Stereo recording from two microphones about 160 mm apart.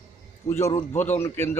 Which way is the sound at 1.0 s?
15° left (ahead or behind).